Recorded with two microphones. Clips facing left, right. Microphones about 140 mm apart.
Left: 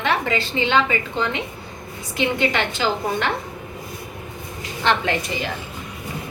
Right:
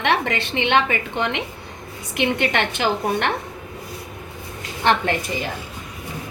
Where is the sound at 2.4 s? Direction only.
60° right (ahead or behind).